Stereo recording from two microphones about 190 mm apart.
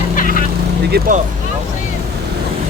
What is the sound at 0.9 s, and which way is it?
Vehicle, 55° right (ahead or behind).